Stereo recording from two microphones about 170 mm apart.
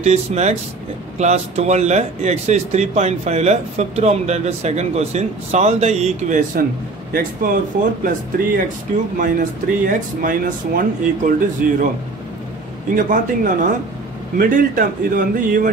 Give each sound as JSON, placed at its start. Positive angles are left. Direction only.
{"t": 0.0, "sound": "speech", "side_deg": -40}
{"t": 7.1, "sound": "speech", "side_deg": -60}
{"t": 12.9, "sound": "speech", "side_deg": -50}